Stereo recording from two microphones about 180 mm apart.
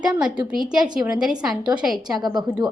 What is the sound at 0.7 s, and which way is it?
A woman's voice, 5° right (ahead or behind).